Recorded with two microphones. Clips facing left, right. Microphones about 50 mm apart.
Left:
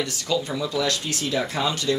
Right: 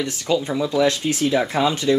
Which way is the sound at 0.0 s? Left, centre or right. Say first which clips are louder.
Right 4 dB; right.